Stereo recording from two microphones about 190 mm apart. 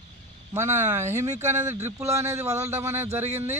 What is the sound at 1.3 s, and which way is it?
Speech, 35° right (ahead or behind).